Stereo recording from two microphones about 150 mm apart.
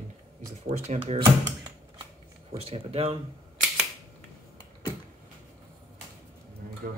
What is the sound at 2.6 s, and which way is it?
Speech, 40° right (ahead or behind).